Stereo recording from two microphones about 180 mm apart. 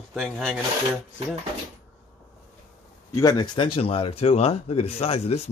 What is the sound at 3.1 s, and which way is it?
Speech, 20° left (ahead or behind).